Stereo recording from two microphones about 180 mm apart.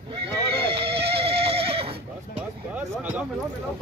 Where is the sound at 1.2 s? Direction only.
30° right (ahead or behind).